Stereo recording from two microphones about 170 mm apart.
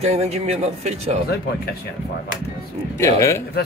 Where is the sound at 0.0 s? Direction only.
40° right (ahead or behind).